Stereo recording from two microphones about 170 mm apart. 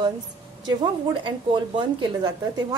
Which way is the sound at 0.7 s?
25° right (ahead or behind).